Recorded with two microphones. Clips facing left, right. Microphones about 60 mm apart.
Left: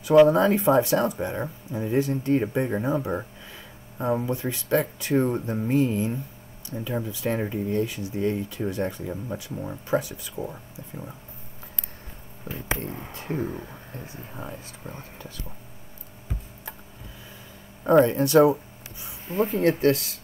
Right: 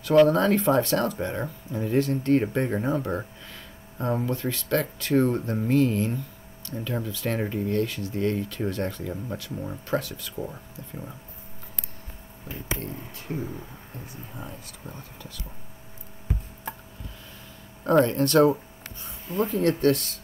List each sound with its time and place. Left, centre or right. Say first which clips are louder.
0.0 s speech: left 2 dB; centre
4.3 s speech: left 1 dB; centre
10.5 s speech: even; centre
12.4 s speech: left 3 dB; centre
12.9 s speech: left 3 dB; left
13.9 s speech: left 1 dB; left
17.8 s speech: left 2 dB; centre